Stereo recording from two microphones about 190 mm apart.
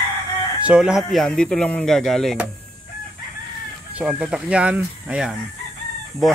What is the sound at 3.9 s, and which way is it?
Speech, 5° right (ahead or behind).